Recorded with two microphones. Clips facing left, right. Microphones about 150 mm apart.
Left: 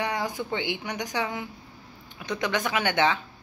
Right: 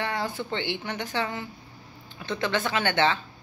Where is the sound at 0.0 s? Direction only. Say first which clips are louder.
Left 1 dB; 15° left (ahead or behind).